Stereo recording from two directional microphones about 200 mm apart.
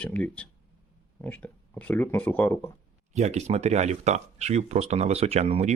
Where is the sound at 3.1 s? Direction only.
35° right (ahead or behind).